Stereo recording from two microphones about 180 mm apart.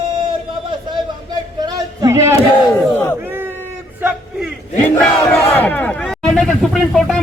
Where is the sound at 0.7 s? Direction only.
25° right (ahead or behind); by 4.5 s 5° right (ahead or behind).